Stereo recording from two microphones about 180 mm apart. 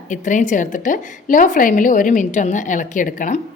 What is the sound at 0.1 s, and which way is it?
A woman's voice, 45° left (ahead or behind).